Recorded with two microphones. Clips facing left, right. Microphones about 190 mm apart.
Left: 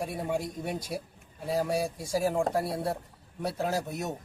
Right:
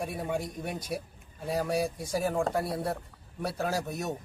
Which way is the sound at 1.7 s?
25° left (ahead or behind).